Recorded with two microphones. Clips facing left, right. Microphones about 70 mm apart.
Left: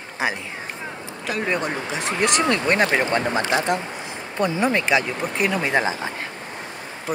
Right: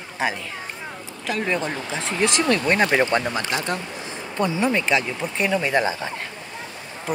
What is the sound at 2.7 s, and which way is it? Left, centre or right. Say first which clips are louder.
Speech: right 1 dB; centre.